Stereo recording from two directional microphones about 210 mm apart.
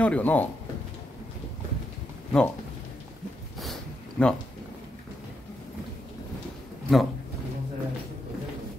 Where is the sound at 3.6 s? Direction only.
5° left (ahead or behind).